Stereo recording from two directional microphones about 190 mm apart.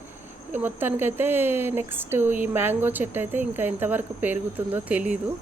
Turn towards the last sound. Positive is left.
turn(degrees=-5)  # may be behind; listen again after turning